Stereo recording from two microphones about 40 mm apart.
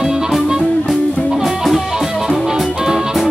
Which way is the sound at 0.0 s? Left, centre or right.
Centre.